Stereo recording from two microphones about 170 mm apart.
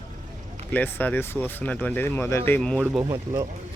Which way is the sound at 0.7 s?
10° left (ahead or behind).